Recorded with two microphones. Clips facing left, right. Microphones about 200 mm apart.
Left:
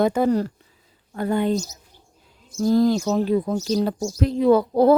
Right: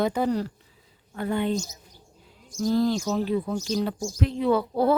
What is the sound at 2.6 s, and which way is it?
Speech, 45° left (ahead or behind).